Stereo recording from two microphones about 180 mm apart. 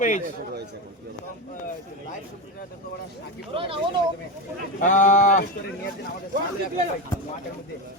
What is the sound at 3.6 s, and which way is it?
Speech, 30° right (ahead or behind).